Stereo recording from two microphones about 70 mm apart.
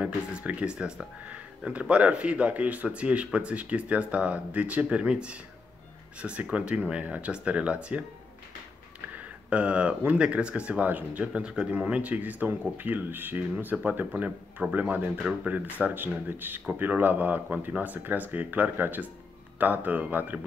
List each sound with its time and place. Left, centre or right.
0.0 s speech: centre
9.5 s speech: centre